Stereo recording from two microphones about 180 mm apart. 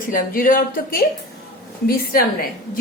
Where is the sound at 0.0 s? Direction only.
50° left (ahead or behind).